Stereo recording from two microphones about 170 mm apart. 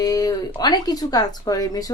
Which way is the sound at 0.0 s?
20° left (ahead or behind).